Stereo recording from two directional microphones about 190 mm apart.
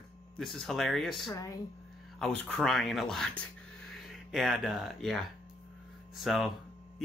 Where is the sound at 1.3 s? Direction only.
20° left (ahead or behind).